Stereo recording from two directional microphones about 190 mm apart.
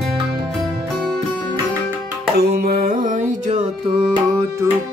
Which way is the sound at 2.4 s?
50° right (ahead or behind).